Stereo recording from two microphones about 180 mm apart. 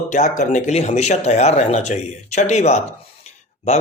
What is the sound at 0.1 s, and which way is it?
Speech, 45° left (ahead or behind).